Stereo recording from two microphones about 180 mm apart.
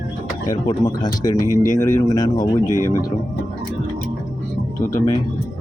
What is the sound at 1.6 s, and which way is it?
Speech, 45° left (ahead or behind).